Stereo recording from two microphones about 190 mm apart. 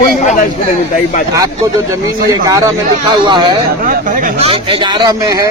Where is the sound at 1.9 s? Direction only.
15° right (ahead or behind).